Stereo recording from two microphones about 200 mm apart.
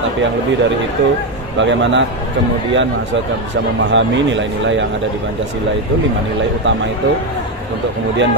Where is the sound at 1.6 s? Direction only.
65° right (ahead or behind).